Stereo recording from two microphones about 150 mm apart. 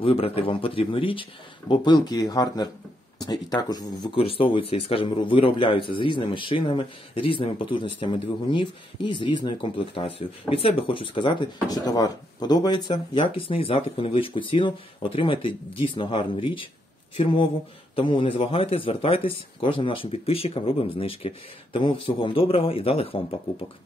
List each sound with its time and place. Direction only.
0.0 s speech: 40° left (ahead or behind)